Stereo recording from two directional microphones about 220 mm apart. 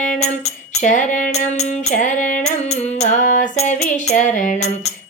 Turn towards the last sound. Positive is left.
turn(degrees=35)  # may be behind; listen again after turning